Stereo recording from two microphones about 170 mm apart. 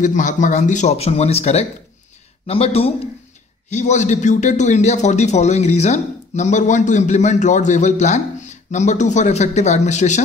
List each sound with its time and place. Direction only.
0.0 s a man's voice: 45° left (ahead or behind)